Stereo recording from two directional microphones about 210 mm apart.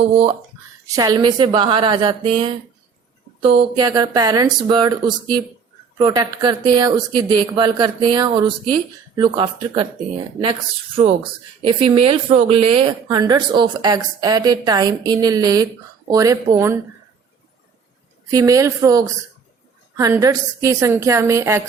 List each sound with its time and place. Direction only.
0.9 s a woman's voice: 20° right (ahead or behind)
11.0 s a woman's voice: 25° right (ahead or behind)
18.3 s a woman's voice: 15° right (ahead or behind)